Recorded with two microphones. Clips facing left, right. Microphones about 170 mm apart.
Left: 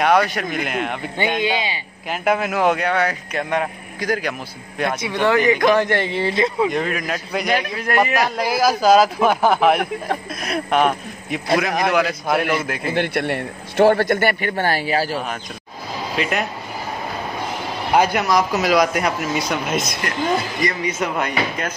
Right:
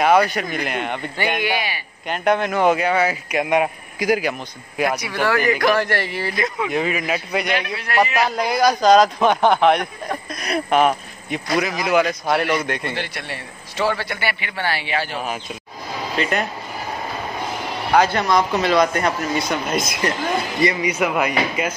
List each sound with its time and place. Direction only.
0.0 s a man's voice: centre (ahead or behind)
1.1 s speech: 20° left (ahead or behind)
2.0 s a man's voice: 5° left (ahead or behind)
5.2 s speech: 20° left (ahead or behind)
6.7 s a man's voice: 5° right (ahead or behind)
7.5 s a man's voice: 45° left (ahead or behind)
8.1 s a man's voice: centre (ahead or behind)
12.9 s a man's voice: 55° left (ahead or behind); by 15.0 s 40° left (ahead or behind)
16.2 s a man's voice: centre (ahead or behind)
17.9 s a man's voice: 10° left (ahead or behind); by 21.7 s 10° right (ahead or behind)